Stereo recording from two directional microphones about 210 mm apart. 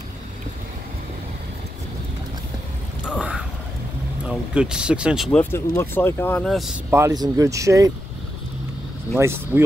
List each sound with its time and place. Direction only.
3.2 s a sound: 5° right (ahead or behind)
4.3 s speech: 5° right (ahead or behind)
7.0 s speech: 15° right (ahead or behind)
9.1 s speech: 10° right (ahead or behind)